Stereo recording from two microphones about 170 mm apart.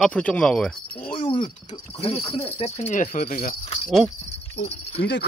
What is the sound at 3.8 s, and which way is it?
Speech, centre (ahead or behind).